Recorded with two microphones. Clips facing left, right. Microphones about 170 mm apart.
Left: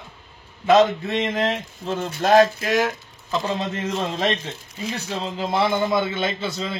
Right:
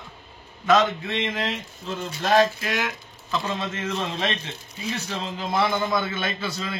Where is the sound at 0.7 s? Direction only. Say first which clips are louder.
Left 4 dB; 35° left (ahead or behind).